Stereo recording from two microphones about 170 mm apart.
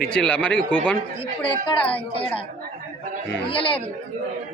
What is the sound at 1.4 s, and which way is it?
Speech, 30° left (ahead or behind).